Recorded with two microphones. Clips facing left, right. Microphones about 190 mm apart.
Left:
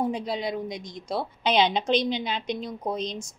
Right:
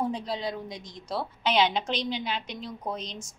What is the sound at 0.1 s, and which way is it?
A woman's voice, 15° left (ahead or behind).